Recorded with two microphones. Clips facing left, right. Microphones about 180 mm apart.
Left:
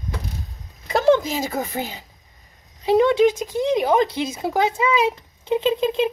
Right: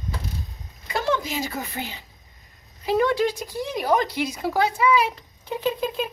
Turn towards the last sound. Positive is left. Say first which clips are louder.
# left 6 dB
turn(degrees=20)  # may be behind; listen again after turning